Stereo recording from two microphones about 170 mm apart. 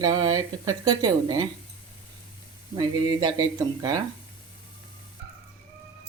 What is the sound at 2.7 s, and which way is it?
Speech, 25° right (ahead or behind).